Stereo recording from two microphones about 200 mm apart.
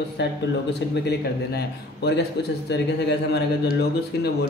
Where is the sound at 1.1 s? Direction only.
55° left (ahead or behind).